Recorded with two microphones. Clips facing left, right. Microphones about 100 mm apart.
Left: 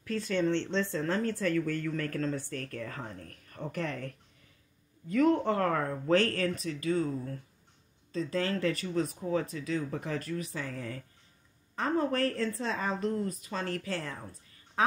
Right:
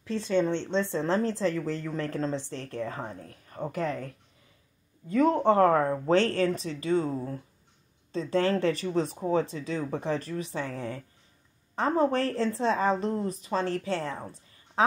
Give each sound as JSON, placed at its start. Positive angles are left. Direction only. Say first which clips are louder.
{"t": 0.0, "sound": "a woman's voice", "louder": "right 3 dB", "side_deg": -25}
{"t": 5.1, "sound": "a woman's voice", "louder": "right 4 dB", "side_deg": -30}